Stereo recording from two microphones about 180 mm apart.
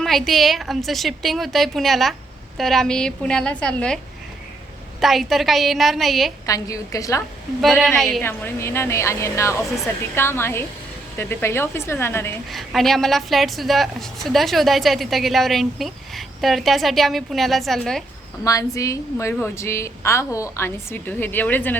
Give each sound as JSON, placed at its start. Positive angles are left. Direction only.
{"t": 0.0, "sound": "a woman's voice", "side_deg": 0}
{"t": 6.4, "sound": "a woman's voice", "side_deg": 20}
{"t": 7.6, "sound": "a woman's voice", "side_deg": 5}
{"t": 8.2, "sound": "a woman's voice", "side_deg": 10}
{"t": 12.5, "sound": "a woman's voice", "side_deg": 0}
{"t": 18.4, "sound": "a woman's voice", "side_deg": 20}